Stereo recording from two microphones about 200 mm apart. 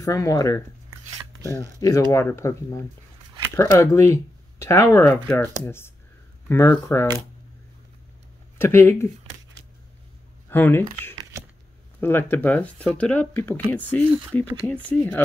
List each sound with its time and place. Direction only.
0.0 s speech: 15° left (ahead or behind)
8.5 s speech: 10° left (ahead or behind)
10.5 s speech: 10° left (ahead or behind)